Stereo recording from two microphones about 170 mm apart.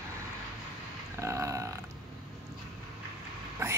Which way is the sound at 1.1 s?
15° right (ahead or behind).